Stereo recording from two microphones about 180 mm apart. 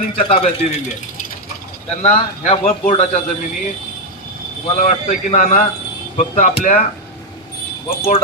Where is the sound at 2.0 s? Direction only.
35° left (ahead or behind).